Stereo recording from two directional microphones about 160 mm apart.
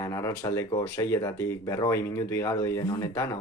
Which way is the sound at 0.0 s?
20° left (ahead or behind).